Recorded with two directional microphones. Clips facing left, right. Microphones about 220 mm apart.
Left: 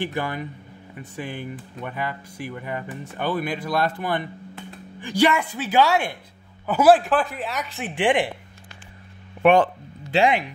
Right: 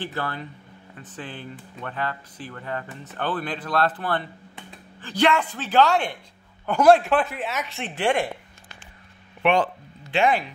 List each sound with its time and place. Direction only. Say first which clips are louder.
0.0 s a woman's voice: left 3 dB; 15° left (ahead or behind)
7.9 s speech: left 2 dB; 15° left (ahead or behind)
9.4 s speech: left 5 dB; 45° left (ahead or behind)